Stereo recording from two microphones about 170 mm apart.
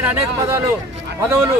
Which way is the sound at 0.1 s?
15° right (ahead or behind).